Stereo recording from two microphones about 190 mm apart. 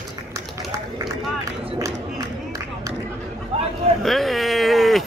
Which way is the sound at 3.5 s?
30° right (ahead or behind).